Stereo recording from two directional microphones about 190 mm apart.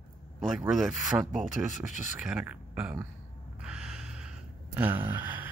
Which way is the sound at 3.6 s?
5° right (ahead or behind).